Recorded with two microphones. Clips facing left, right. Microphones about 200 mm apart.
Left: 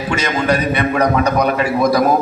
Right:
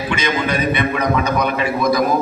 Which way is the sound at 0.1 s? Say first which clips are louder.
Left 4 dB; 40° left (ahead or behind).